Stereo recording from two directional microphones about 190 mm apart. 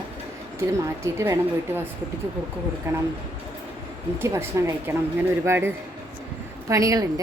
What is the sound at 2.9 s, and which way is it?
Speech, 15° right (ahead or behind).